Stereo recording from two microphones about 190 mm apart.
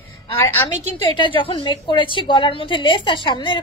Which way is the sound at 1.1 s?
25° left (ahead or behind).